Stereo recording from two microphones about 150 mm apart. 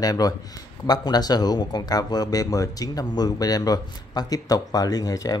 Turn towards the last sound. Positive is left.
turn(degrees=25)  # may be behind; listen again after turning